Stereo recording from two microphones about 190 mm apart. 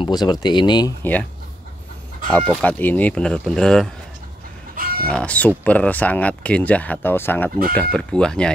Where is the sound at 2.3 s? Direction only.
5° left (ahead or behind).